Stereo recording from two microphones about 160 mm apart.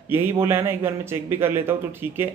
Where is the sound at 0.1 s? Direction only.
15° right (ahead or behind).